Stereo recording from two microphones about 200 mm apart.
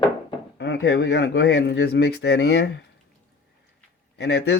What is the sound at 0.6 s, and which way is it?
Speech, 60° left (ahead or behind).